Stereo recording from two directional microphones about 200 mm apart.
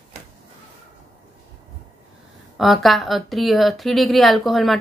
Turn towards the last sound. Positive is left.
turn(degrees=0)  # may be behind; listen again after turning